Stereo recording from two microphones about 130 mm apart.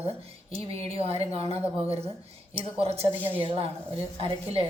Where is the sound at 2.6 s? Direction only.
50° right (ahead or behind).